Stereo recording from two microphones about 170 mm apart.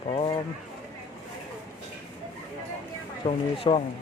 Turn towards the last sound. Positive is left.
turn(degrees=35)  # may be behind; listen again after turning